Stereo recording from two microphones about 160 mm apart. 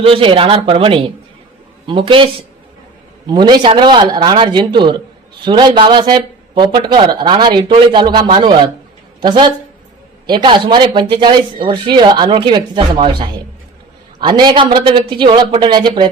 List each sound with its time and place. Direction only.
0.0 s speech: 35° right (ahead or behind)